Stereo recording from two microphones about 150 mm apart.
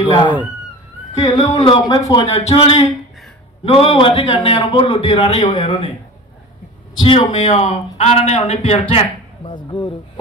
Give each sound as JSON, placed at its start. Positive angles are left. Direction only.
{"t": 0.0, "sound": "speech", "side_deg": 30}
{"t": 2.1, "sound": "a man's voice", "side_deg": 45}
{"t": 7.0, "sound": "speech", "side_deg": 30}
{"t": 7.3, "sound": "a man's voice", "side_deg": 50}
{"t": 8.9, "sound": "speech", "side_deg": 35}